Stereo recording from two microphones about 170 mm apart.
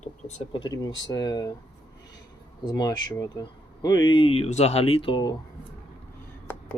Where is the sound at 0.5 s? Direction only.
25° left (ahead or behind).